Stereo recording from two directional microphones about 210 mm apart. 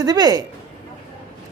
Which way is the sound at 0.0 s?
20° right (ahead or behind).